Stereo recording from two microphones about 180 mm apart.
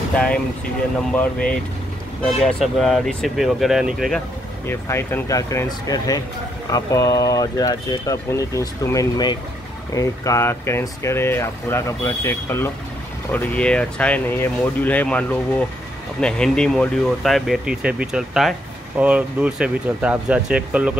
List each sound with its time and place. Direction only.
0.1 s speech: 5° left (ahead or behind)
4.6 s speech: 15° left (ahead or behind); by 20.9 s 5° right (ahead or behind)